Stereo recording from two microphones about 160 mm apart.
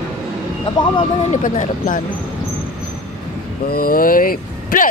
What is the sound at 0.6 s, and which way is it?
Vehicle, 30° left (ahead or behind).